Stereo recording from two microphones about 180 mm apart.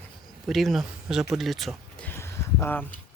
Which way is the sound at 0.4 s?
Centre (ahead or behind).